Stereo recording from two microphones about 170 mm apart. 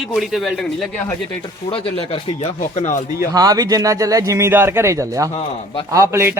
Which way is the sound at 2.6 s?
50° left (ahead or behind).